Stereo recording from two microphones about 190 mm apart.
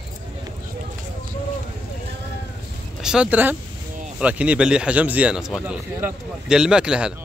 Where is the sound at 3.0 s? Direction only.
5° right (ahead or behind).